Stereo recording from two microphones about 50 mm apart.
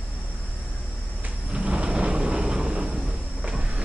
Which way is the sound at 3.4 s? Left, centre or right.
Centre.